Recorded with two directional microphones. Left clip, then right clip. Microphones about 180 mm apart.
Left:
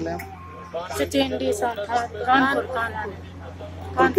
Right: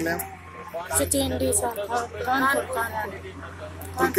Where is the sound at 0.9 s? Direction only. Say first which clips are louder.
Left 2 dB; 25° left (ahead or behind).